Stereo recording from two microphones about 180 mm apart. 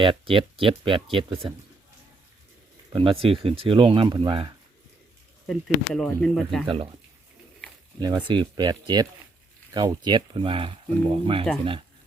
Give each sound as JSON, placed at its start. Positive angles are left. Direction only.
{"t": 0.0, "sound": "speech", "side_deg": -30}
{"t": 2.9, "sound": "speech", "side_deg": -30}
{"t": 5.5, "sound": "speech", "side_deg": 0}
{"t": 7.9, "sound": "speech", "side_deg": -25}